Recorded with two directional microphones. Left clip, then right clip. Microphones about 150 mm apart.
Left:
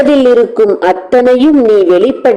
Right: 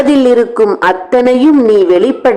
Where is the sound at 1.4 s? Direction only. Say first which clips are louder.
Even; 15° left (ahead or behind).